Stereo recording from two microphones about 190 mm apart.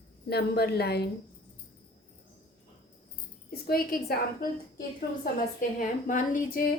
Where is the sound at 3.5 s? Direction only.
50° left (ahead or behind).